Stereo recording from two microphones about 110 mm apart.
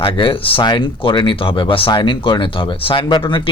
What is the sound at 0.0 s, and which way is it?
Speech, 50° left (ahead or behind).